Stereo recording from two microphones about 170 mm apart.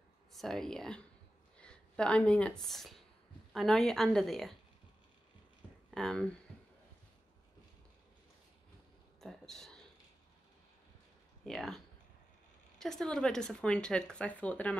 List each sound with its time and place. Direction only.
0.3 s speech: centre (ahead or behind)
5.9 s speech: 5° left (ahead or behind)
9.2 s a sound: centre (ahead or behind)
11.4 s speech: centre (ahead or behind)